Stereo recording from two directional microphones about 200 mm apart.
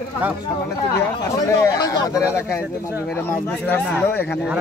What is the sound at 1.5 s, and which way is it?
A man's voice, 15° left (ahead or behind).